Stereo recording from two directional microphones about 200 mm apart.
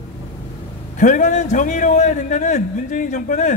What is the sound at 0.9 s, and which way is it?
A man's voice, 40° left (ahead or behind).